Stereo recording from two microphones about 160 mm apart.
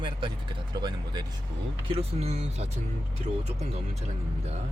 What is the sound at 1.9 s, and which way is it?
Speech, 40° right (ahead or behind).